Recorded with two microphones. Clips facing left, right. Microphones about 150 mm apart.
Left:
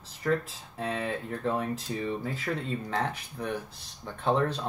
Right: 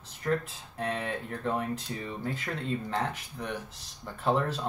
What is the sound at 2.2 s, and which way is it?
Speech, centre (ahead or behind).